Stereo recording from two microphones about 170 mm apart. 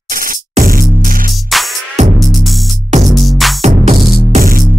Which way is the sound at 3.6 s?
40° right (ahead or behind).